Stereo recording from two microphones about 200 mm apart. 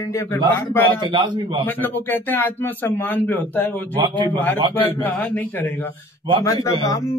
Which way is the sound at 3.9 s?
20° right (ahead or behind).